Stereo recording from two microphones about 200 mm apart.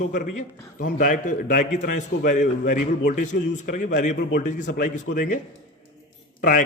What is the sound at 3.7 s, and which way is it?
A man's voice, 40° left (ahead or behind).